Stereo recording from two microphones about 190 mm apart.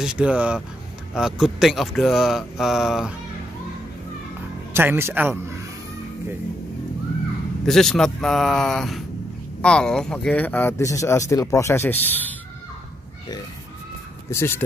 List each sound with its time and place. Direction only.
0.0 s speech: 5° right (ahead or behind)
4.7 s speech: 10° right (ahead or behind)
7.6 s speech: centre (ahead or behind)
14.3 s speech: 10° left (ahead or behind)